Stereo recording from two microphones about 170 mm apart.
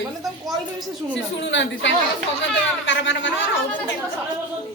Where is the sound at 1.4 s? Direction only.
90° left.